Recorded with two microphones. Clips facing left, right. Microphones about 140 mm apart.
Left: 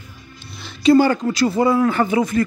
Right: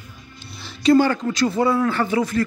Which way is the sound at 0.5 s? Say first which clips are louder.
Left 2 dB; centre (ahead or behind).